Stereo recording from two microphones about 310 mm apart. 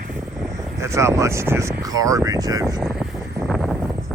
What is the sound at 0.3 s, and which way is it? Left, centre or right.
Speech, centre.